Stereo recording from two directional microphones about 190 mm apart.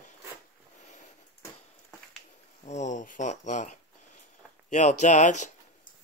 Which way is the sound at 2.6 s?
40° left (ahead or behind).